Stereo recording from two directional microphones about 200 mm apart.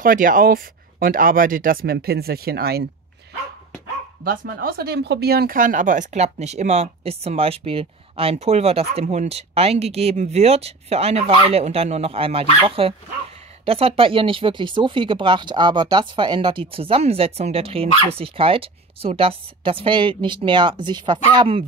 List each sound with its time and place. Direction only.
0.0 s speech: 45° right (ahead or behind)
4.2 s speech: 45° right (ahead or behind); by 21.6 s 25° right (ahead or behind)